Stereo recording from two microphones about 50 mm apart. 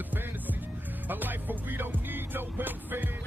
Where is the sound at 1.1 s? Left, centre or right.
Right.